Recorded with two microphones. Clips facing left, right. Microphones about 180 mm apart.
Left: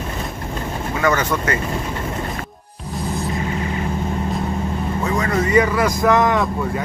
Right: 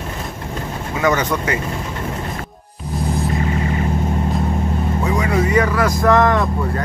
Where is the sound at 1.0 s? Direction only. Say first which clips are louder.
Right 1 dB; 20° right (ahead or behind).